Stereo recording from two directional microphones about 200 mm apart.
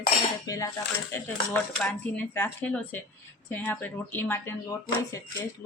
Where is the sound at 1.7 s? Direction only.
5° left (ahead or behind).